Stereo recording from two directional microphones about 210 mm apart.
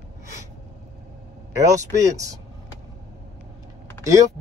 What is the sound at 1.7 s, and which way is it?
Speech, 15° right (ahead or behind).